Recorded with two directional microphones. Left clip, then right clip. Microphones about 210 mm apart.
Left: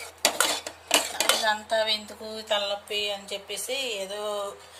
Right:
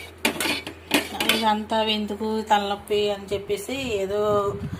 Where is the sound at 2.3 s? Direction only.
10° right (ahead or behind).